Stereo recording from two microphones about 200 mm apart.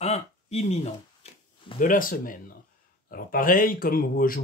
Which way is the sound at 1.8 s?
45° left (ahead or behind).